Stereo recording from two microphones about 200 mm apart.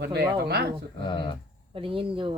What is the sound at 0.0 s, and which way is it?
Speech, 55° right (ahead or behind).